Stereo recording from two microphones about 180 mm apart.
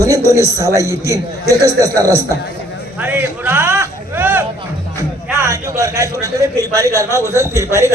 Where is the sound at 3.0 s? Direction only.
10° right (ahead or behind).